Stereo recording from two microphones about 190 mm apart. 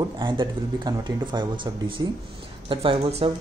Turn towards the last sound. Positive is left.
turn(degrees=-30)  # may be behind; listen again after turning